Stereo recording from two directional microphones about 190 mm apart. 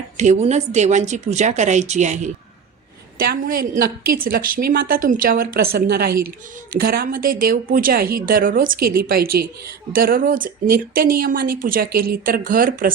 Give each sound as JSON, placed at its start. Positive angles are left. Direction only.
{"t": 0.2, "sound": "speech", "side_deg": -35}
{"t": 3.4, "sound": "speech", "side_deg": -50}